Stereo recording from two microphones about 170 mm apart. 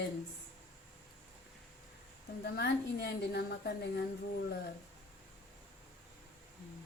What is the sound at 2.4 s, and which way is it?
A woman's voice, 70° left (ahead or behind).